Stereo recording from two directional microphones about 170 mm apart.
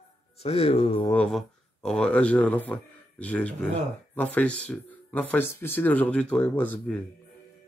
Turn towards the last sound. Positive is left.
turn(degrees=5)  # may be behind; listen again after turning